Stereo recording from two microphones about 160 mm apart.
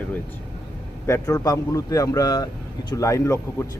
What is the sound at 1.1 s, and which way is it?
Speech, 20° left (ahead or behind).